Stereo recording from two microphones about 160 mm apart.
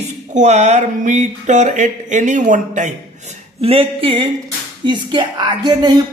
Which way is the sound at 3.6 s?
35° right (ahead or behind).